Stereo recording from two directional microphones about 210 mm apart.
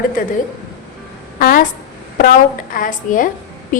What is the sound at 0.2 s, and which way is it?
Speech, 40° left (ahead or behind).